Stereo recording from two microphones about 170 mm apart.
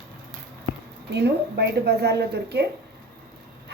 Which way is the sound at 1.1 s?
75° right (ahead or behind).